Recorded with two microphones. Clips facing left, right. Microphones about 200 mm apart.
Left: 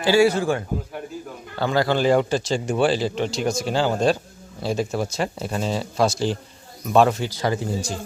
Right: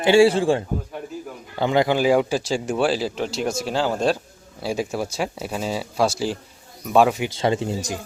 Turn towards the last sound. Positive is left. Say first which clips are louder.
# right 1 dB
turn(degrees=-20)  # may be behind; listen again after turning